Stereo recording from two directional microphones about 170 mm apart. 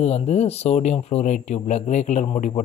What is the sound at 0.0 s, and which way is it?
Speech, 40° left (ahead or behind).